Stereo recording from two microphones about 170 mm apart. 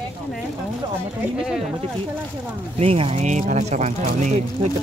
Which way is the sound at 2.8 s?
35° right (ahead or behind).